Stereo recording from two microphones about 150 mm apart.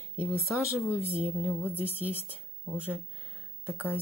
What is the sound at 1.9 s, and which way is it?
Speech, 15° left (ahead or behind).